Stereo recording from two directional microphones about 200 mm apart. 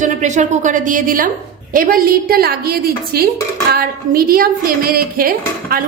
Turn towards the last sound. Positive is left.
turn(degrees=-45)  # may be behind; listen again after turning